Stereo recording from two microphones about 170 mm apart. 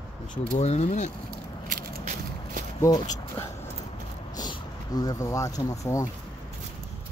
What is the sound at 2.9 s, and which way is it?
Speech, 20° left (ahead or behind).